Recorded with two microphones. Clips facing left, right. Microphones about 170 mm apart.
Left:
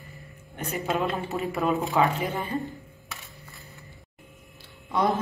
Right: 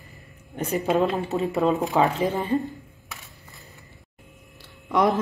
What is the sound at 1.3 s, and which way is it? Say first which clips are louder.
Speech: right 4 dB; 20° right (ahead or behind).